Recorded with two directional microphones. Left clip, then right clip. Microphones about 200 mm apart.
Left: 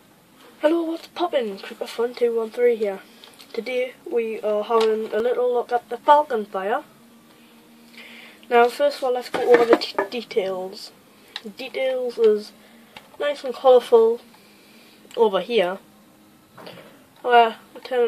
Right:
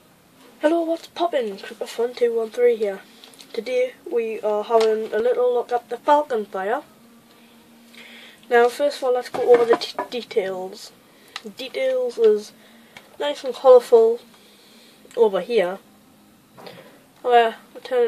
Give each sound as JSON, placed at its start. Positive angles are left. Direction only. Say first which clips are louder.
{"t": 0.6, "sound": "speech", "louder": "right 1 dB", "side_deg": 0}
{"t": 8.5, "sound": "speech", "louder": "even", "side_deg": 0}
{"t": 9.3, "sound": "speech", "louder": "even", "side_deg": 45}
{"t": 10.0, "sound": "speech", "louder": "even", "side_deg": 0}
{"t": 15.1, "sound": "speech", "louder": "right 1 dB", "side_deg": 5}
{"t": 17.3, "sound": "speech", "louder": "left 1 dB", "side_deg": 0}